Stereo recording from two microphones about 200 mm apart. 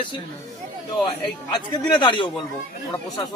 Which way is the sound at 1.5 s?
25° left (ahead or behind).